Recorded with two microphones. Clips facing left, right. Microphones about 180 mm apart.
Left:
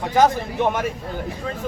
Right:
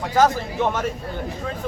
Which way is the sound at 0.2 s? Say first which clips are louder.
Left 1 dB; 15° left (ahead or behind).